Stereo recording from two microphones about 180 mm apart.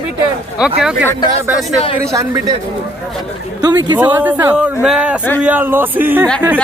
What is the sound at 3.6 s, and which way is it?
Speech, 20° right (ahead or behind).